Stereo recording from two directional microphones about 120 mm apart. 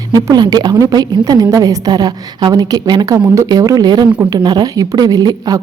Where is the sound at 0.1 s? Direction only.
35° right (ahead or behind).